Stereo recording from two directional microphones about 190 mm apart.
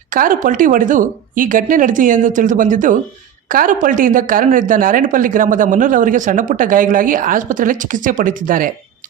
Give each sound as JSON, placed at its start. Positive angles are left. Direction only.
{"t": 0.1, "sound": "a woman's voice", "side_deg": -45}